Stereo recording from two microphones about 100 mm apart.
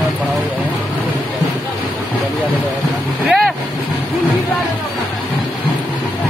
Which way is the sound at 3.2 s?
Centre (ahead or behind).